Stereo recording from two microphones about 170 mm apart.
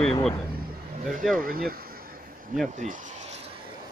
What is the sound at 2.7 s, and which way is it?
Speech, 45° right (ahead or behind).